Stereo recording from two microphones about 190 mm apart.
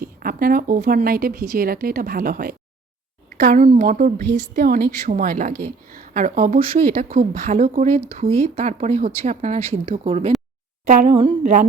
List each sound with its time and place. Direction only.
0.0 s a woman's voice: 50° right (ahead or behind); by 10.3 s 35° right (ahead or behind)
10.8 s a woman's voice: 45° right (ahead or behind)